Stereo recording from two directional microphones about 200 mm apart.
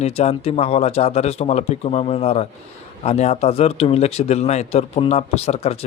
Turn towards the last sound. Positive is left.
turn(degrees=30)  # may be behind; listen again after turning